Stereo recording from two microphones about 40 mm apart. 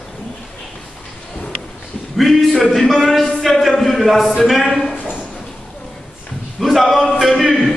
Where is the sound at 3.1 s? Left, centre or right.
Centre.